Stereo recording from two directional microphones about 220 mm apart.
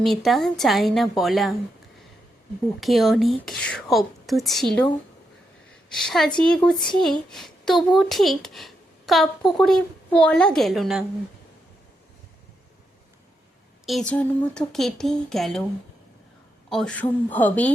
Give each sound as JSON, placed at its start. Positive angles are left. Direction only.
{"t": 0.0, "sound": "a child's voice", "side_deg": 0}
{"t": 2.8, "sound": "a child's voice", "side_deg": 0}
{"t": 5.9, "sound": "a child's voice", "side_deg": 0}
{"t": 13.8, "sound": "a child's voice", "side_deg": 0}
{"t": 16.6, "sound": "a woman's voice", "side_deg": 5}